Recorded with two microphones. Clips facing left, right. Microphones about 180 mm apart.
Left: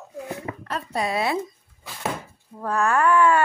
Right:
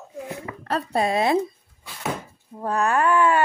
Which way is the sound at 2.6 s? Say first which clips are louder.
Even; 20° right (ahead or behind).